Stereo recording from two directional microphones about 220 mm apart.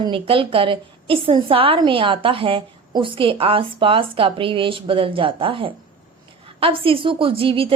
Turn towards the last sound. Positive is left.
turn(degrees=-25)  # may be behind; listen again after turning